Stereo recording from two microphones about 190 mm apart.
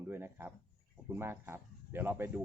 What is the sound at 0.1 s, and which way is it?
A man's voice, 10° right (ahead or behind).